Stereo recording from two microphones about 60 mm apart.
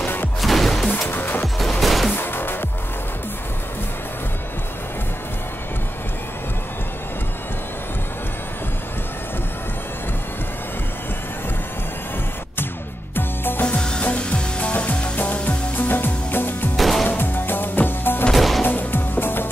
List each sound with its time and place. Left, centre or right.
0.0 s music: left
0.4 s music: centre
1.0 s music: left
1.8 s music: centre
2.1 s music: left
13.1 s music: left
13.7 s music: centre
14.0 s frying: left
15.1 s music: left
16.7 s music: centre
17.1 s music: left
18.3 s music: centre
18.6 s music: left